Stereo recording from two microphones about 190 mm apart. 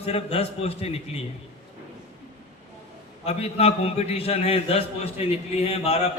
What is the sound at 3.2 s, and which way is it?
A man's voice, 30° left (ahead or behind).